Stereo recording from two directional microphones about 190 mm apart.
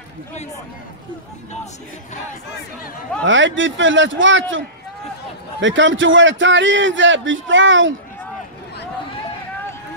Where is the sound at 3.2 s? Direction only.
85° right.